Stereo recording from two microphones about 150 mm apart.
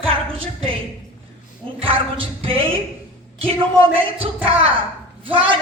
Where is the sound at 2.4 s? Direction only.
35° right (ahead or behind).